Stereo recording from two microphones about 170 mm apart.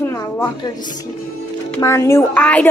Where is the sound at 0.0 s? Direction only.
15° left (ahead or behind).